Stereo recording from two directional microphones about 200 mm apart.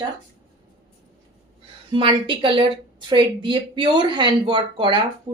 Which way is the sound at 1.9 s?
25° right (ahead or behind).